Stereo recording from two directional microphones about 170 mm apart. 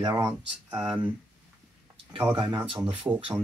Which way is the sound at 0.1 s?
10° right (ahead or behind).